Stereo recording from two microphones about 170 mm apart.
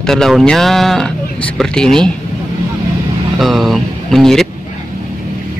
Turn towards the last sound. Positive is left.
turn(degrees=0)  # may be behind; listen again after turning